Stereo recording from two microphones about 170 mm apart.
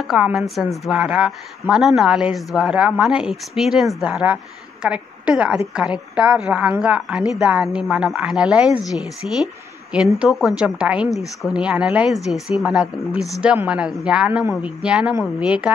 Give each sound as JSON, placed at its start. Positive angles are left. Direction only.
{"t": 0.0, "sound": "a woman's voice", "side_deg": 0}